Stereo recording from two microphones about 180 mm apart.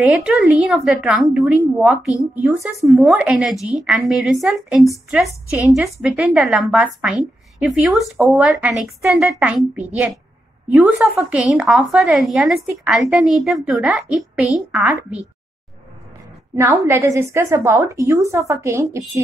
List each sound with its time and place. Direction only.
0.0 s a woman's voice: 5° right (ahead or behind)
16.5 s a woman's voice: 15° right (ahead or behind)